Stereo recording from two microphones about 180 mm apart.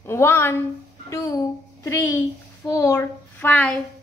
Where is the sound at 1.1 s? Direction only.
15° left (ahead or behind).